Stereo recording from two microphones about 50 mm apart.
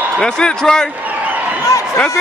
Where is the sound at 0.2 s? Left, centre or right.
Centre.